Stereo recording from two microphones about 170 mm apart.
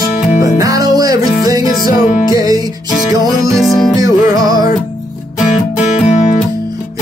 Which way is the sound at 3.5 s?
Centre (ahead or behind).